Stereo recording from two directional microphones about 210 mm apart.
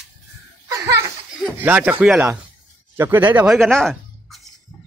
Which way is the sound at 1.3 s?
5° right (ahead or behind).